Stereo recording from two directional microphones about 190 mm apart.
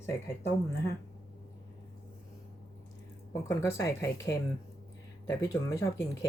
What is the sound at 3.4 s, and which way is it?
Speech, 15° left (ahead or behind).